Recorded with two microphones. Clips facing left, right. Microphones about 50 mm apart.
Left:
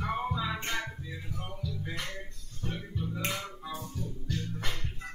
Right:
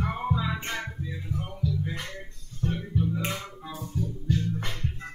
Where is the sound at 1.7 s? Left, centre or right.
Centre.